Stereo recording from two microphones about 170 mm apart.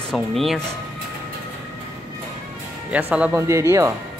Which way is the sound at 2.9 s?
10° right (ahead or behind).